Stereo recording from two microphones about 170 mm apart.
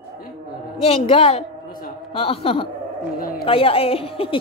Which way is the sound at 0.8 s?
35° left (ahead or behind).